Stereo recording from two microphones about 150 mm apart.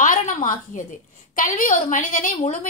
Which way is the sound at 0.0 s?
60° left (ahead or behind).